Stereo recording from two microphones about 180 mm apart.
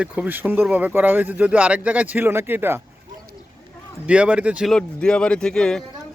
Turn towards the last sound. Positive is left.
turn(degrees=5)  # may be behind; listen again after turning